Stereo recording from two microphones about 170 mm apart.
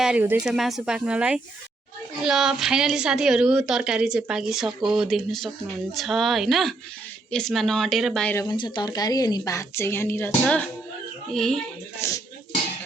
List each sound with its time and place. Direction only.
0.0 s a woman's voice: 10° right (ahead or behind)
8.4 s a woman's voice: 25° left (ahead or behind); by 11.6 s 5° left (ahead or behind)
12.0 s speech: 15° left (ahead or behind)